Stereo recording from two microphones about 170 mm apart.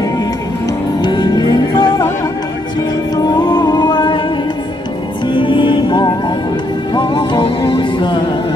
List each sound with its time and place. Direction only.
1.0 s music: 25° left (ahead or behind)
3.2 s music: 25° left (ahead or behind)
5.3 s music: 30° left (ahead or behind)